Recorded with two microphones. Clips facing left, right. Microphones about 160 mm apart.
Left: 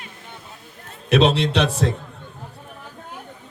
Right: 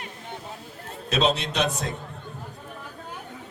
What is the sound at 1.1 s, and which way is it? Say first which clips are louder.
Speech: left 7 dB; 80° left.